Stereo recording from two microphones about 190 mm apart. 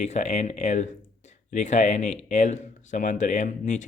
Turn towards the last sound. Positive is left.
turn(degrees=40)  # may be behind; listen again after turning